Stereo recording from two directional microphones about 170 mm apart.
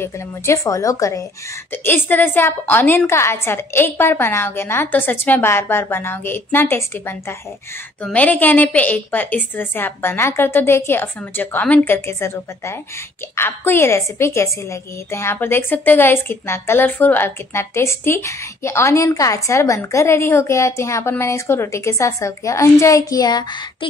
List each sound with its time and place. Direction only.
0.0 s a woman's voice: 15° left (ahead or behind)